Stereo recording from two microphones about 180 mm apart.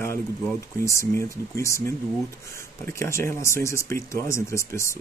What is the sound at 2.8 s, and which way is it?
Speech, 15° left (ahead or behind).